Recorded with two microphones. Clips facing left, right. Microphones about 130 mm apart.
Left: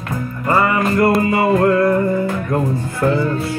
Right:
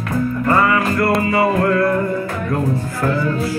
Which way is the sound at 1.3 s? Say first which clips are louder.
Left 2 dB; 25° left (ahead or behind).